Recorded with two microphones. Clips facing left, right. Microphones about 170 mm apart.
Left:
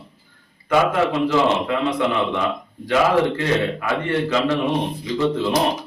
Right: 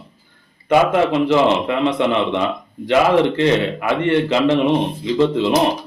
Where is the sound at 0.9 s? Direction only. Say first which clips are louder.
Right 4 dB; 20° right (ahead or behind).